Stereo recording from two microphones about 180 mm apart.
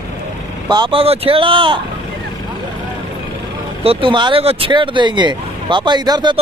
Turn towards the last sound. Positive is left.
turn(degrees=-25)  # may be behind; listen again after turning